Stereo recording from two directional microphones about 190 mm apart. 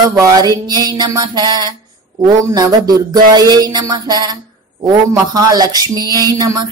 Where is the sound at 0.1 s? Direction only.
15° right (ahead or behind).